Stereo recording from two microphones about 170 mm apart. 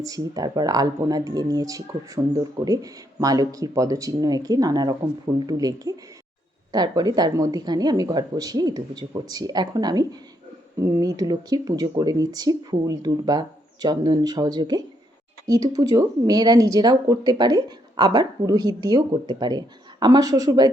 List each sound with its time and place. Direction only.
0.0 s speech: 20° right (ahead or behind)